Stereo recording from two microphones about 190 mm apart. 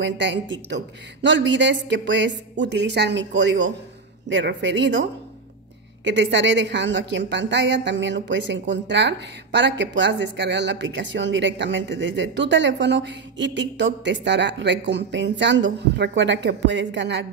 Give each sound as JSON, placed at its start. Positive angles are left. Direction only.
{"t": 0.0, "sound": "a woman's voice", "side_deg": -65}
{"t": 6.0, "sound": "a woman's voice", "side_deg": -70}